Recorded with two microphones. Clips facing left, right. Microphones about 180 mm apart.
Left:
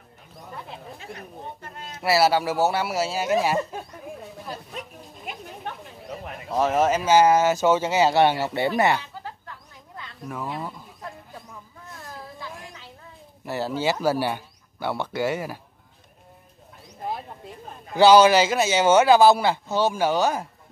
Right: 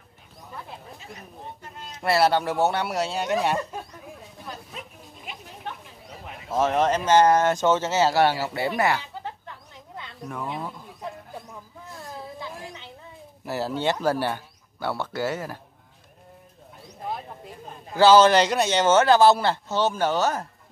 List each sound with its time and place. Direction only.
0.6 s a sound: centre (ahead or behind)
1.8 s speech: centre (ahead or behind)
6.5 s speech: centre (ahead or behind); by 8.4 s 20° left (ahead or behind)
8.4 s speech: centre (ahead or behind)
10.2 s a sound: centre (ahead or behind)
12.4 s music: centre (ahead or behind)
13.5 s speech: centre (ahead or behind)
17.9 s speech: 15° left (ahead or behind)